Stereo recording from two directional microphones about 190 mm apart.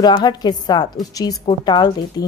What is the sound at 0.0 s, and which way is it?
A woman's voice, 20° left (ahead or behind).